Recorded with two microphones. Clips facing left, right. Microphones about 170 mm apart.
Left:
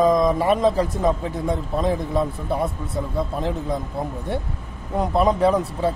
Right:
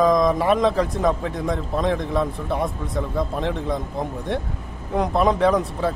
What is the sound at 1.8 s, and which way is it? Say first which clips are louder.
Speech: even; 5° left (ahead or behind).